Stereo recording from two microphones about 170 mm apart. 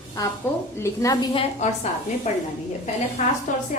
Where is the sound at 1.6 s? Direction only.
40° left (ahead or behind).